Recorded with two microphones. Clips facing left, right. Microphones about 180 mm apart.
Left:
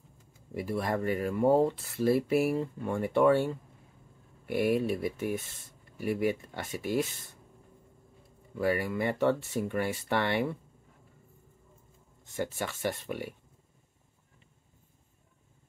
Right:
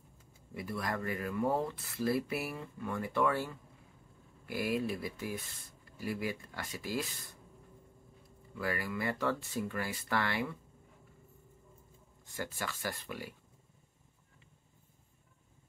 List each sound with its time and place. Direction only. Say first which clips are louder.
0.6 s speech: left 6 dB; 30° left (ahead or behind)
8.5 s speech: left 7 dB; 25° left (ahead or behind)
12.3 s speech: left 6 dB; 25° left (ahead or behind)